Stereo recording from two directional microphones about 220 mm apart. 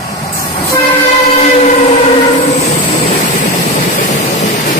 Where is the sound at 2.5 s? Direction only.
30° left (ahead or behind).